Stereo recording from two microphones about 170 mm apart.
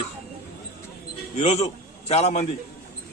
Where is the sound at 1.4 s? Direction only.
40° left (ahead or behind).